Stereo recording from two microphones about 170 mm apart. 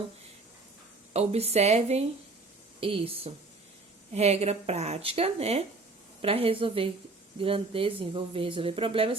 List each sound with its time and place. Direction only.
1.1 s speech: 35° right (ahead or behind)